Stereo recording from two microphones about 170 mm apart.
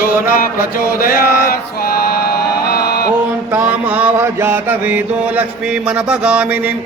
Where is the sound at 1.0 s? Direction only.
60° left (ahead or behind).